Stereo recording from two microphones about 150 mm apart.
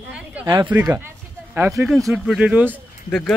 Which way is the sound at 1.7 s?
Centre (ahead or behind).